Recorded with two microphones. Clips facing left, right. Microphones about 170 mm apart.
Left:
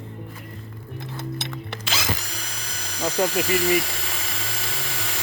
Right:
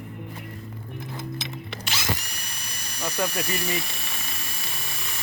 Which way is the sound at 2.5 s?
90° left.